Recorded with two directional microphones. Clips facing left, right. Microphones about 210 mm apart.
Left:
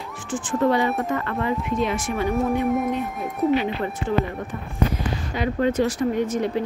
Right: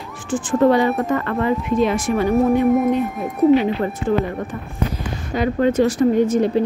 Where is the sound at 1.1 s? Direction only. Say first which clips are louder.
Right 5 dB; 50° right (ahead or behind).